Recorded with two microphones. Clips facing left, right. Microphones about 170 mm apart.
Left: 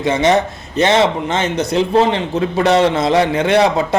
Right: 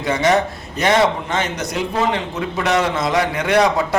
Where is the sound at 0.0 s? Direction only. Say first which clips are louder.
Left 3 dB; 25° left (ahead or behind).